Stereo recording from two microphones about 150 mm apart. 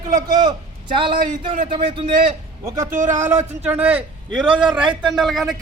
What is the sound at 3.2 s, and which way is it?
A man's voice, 10° right (ahead or behind).